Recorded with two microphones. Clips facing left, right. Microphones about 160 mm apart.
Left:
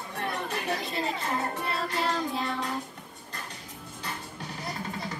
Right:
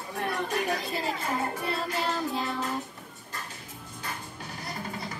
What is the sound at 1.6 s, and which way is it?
Child singing, centre (ahead or behind).